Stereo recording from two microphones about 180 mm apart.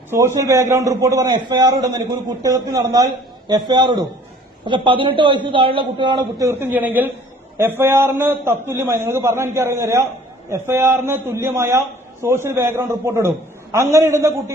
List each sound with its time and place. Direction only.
0.1 s a man's voice: 15° right (ahead or behind)